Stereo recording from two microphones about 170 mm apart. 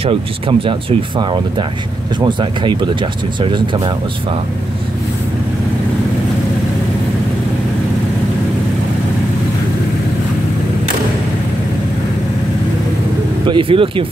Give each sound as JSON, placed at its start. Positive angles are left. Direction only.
{"t": 0.0, "sound": "speech", "side_deg": -30}
{"t": 13.5, "sound": "speech", "side_deg": -30}